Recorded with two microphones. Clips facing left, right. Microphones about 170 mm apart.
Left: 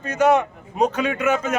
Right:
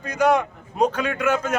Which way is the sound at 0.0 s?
5° left (ahead or behind).